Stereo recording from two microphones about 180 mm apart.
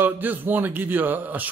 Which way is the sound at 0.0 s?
10° right (ahead or behind).